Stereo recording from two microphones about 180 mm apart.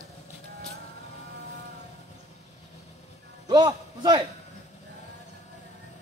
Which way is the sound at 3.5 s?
25° right (ahead or behind).